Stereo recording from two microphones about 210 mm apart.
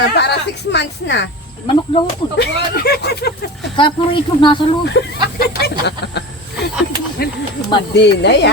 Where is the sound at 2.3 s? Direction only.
50° left (ahead or behind).